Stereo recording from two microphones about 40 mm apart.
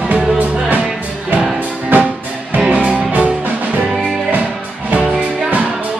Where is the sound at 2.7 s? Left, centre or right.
Right.